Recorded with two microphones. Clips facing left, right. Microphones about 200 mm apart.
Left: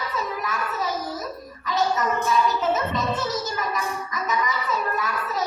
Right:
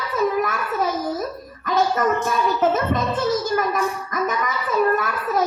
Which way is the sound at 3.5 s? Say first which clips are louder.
Right 7 dB; 55° right (ahead or behind).